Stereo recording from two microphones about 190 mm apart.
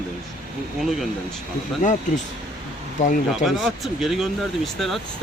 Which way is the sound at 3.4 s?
Centre (ahead or behind).